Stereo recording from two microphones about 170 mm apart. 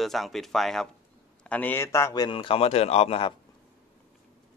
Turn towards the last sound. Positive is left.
turn(degrees=35)  # may be behind; listen again after turning